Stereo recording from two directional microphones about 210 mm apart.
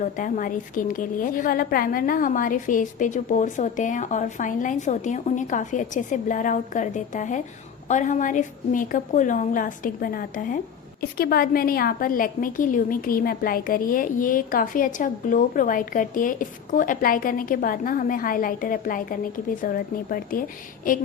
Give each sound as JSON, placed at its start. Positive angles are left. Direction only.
{"t": 0.0, "sound": "a woman's voice", "side_deg": 40}